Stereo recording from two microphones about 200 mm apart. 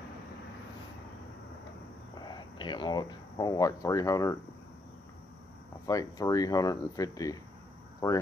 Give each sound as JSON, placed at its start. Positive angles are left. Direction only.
{"t": 2.1, "sound": "speech", "side_deg": 20}
{"t": 5.9, "sound": "speech", "side_deg": 15}